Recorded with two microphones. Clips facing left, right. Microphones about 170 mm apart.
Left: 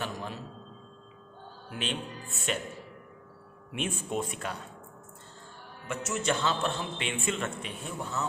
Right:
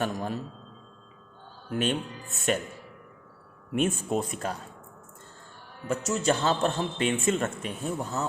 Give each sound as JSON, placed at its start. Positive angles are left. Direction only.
{"t": 0.0, "sound": "a man's voice", "side_deg": -45}
{"t": 1.7, "sound": "a man's voice", "side_deg": -45}
{"t": 3.7, "sound": "a man's voice", "side_deg": -45}
{"t": 5.9, "sound": "a man's voice", "side_deg": -40}